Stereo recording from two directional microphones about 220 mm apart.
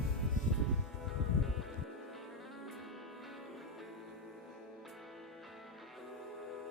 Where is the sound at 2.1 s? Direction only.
Centre (ahead or behind).